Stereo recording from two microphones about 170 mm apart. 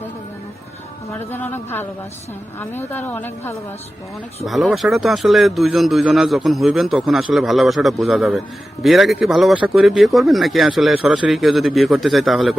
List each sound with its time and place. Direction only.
1.3 s a woman's voice: 10° left (ahead or behind)
4.4 s a man's voice: centre (ahead or behind)